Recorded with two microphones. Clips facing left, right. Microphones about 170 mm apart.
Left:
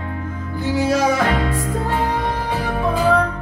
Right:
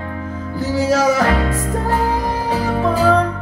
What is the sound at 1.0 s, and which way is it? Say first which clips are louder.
Music: right 2 dB; 40° right (ahead or behind).